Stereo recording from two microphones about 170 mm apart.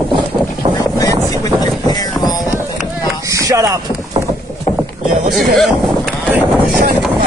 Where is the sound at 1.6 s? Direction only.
25° left (ahead or behind).